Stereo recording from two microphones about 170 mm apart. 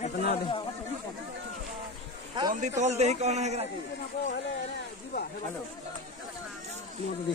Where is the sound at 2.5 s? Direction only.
40° right (ahead or behind).